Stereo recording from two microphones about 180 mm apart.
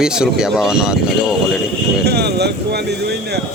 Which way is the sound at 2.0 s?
65° right (ahead or behind).